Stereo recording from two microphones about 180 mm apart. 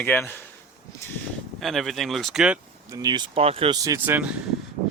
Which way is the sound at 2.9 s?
20° right (ahead or behind).